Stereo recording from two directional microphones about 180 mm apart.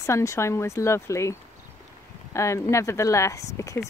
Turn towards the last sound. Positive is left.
turn(degrees=15)  # may be behind; listen again after turning